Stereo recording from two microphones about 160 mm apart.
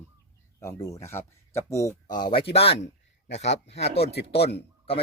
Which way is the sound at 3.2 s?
90° left.